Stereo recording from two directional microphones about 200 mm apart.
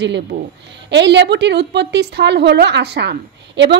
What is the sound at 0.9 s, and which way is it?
A woman's voice, 60° right (ahead or behind).